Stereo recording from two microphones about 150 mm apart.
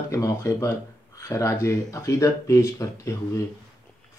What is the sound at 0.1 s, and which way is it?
Speech, 20° left (ahead or behind).